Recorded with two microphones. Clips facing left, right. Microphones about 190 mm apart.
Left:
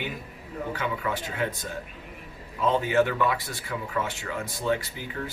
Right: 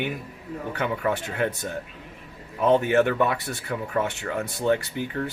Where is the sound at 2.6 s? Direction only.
60° right (ahead or behind).